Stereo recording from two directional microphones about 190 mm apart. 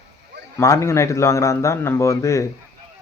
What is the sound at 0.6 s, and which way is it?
A man's voice, 15° left (ahead or behind).